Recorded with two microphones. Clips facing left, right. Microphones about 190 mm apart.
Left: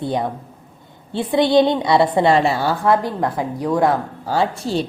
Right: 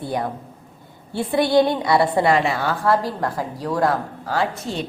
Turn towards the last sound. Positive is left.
turn(degrees=30)  # may be behind; listen again after turning